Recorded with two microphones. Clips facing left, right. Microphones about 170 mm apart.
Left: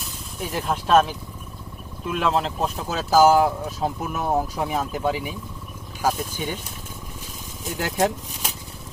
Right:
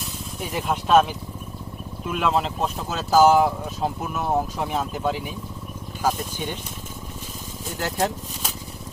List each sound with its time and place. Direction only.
0.3 s speech: centre (ahead or behind)
7.8 s speech: 10° left (ahead or behind)